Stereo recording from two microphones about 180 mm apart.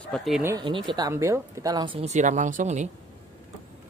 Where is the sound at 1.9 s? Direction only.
40° right (ahead or behind).